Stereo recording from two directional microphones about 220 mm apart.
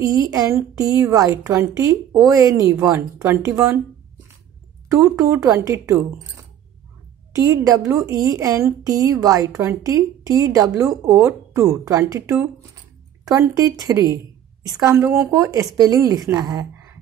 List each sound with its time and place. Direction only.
0.0 s a woman's voice: 15° right (ahead or behind)
4.8 s a woman's voice: 15° right (ahead or behind)